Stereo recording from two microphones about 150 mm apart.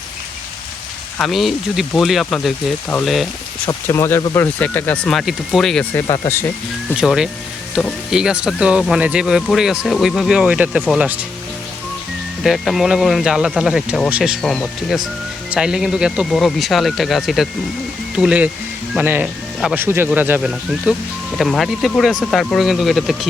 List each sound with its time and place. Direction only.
1.2 s speech: centre (ahead or behind)
3.7 s speech: 20° left (ahead or behind); by 5.8 s centre (ahead or behind)
5.9 s speech: 15° left (ahead or behind)
6.9 s speech: 5° right (ahead or behind)
12.4 s speech: centre (ahead or behind)